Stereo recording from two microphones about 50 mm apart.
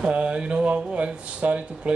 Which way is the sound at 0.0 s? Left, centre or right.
Right.